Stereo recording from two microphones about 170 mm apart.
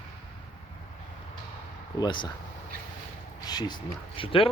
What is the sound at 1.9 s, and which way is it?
Speech, 25° left (ahead or behind).